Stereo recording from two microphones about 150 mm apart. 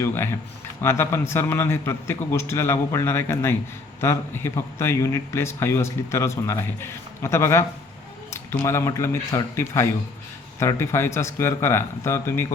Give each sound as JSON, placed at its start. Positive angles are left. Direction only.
{"t": 0.0, "sound": "a man's voice", "side_deg": 15}